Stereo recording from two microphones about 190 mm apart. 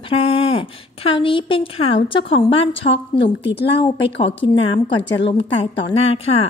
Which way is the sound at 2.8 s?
50° left (ahead or behind).